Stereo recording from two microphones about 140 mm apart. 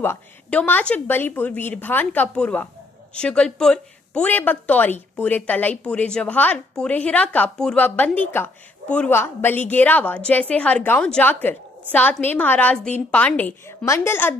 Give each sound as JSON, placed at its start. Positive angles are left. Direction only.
{"t": 0.0, "sound": "a woman's voice", "side_deg": 10}